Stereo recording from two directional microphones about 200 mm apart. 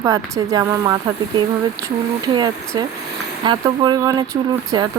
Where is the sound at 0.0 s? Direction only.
20° right (ahead or behind).